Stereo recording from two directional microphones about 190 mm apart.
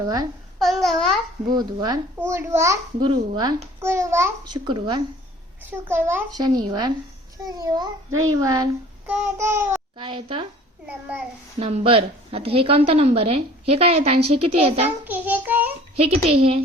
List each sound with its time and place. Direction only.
0.6 s babbling: centre (ahead or behind)
1.5 s a child's voice: 20° right (ahead or behind)
5.9 s a child's voice: 10° right (ahead or behind)
10.0 s speech: 25° right (ahead or behind)
11.6 s a woman's voice: 30° right (ahead or behind)
15.0 s a child's voice: 10° right (ahead or behind)
16.0 s a woman's voice: 30° right (ahead or behind)